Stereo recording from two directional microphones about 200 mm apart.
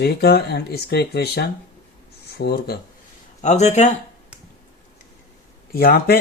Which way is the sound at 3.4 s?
35° left (ahead or behind).